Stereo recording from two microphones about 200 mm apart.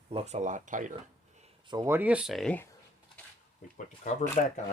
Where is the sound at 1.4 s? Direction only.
20° right (ahead or behind).